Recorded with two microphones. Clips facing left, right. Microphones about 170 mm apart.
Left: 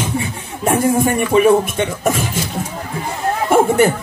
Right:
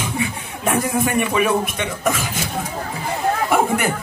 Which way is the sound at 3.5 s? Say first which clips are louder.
Left 9 dB; 30° left (ahead or behind).